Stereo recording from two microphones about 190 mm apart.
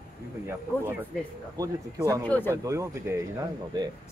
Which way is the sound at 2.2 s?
10° left (ahead or behind).